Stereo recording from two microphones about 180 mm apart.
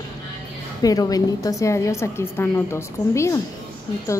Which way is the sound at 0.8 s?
20° left (ahead or behind).